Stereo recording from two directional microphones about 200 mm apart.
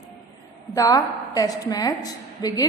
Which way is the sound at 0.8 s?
15° left (ahead or behind).